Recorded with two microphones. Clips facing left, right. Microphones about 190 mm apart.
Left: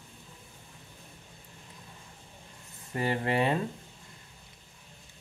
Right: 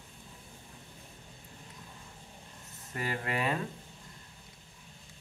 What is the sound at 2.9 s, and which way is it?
Speech, 25° left (ahead or behind).